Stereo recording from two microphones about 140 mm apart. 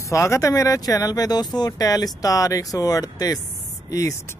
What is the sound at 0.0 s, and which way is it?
Speech, 20° left (ahead or behind).